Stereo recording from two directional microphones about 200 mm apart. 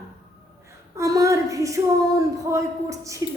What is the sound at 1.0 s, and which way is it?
Speech, 15° right (ahead or behind).